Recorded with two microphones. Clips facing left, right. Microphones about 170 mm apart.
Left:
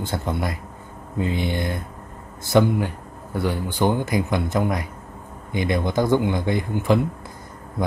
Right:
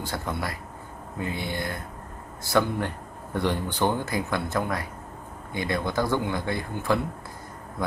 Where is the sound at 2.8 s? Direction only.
5° left (ahead or behind).